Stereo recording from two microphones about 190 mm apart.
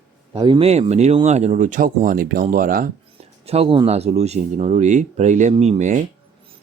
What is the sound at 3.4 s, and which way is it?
Speech, 30° right (ahead or behind).